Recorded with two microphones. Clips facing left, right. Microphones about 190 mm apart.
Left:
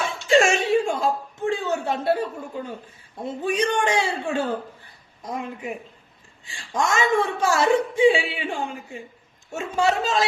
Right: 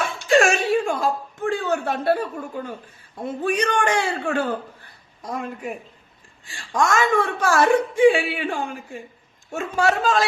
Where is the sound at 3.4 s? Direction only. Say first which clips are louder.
Right 1 dB; 55° right (ahead or behind).